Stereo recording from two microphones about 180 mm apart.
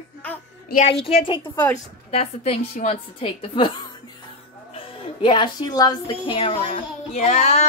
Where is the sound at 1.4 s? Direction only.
10° left (ahead or behind).